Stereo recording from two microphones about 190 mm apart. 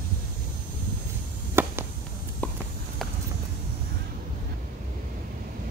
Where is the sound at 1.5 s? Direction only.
15° right (ahead or behind).